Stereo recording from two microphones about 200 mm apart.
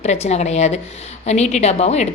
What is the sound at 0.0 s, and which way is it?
A woman's voice, 35° left (ahead or behind).